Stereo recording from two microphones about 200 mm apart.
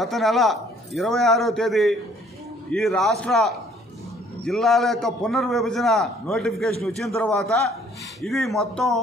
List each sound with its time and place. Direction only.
0.0 s a man's voice: centre (ahead or behind)